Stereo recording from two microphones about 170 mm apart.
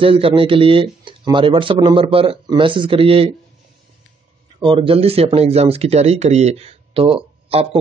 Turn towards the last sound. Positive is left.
turn(degrees=-35)  # may be behind; listen again after turning